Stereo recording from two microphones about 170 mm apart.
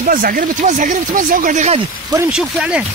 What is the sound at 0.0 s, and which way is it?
Speech, 55° right (ahead or behind).